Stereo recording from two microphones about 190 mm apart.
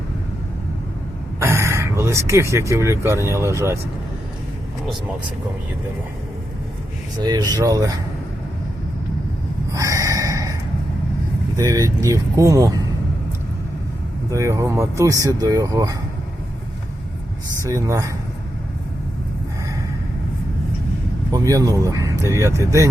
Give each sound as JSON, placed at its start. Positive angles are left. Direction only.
{"t": 1.4, "sound": "speech", "side_deg": -15}
{"t": 7.2, "sound": "speech", "side_deg": -20}
{"t": 9.7, "sound": "a sound", "side_deg": -15}
{"t": 11.5, "sound": "speech", "side_deg": -20}
{"t": 14.3, "sound": "speech", "side_deg": -15}
{"t": 17.6, "sound": "speech", "side_deg": -15}
{"t": 21.3, "sound": "speech", "side_deg": -20}